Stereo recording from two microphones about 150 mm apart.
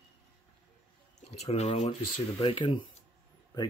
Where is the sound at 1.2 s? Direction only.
45° left (ahead or behind).